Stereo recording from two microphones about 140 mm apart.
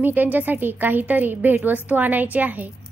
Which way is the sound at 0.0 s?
10° right (ahead or behind).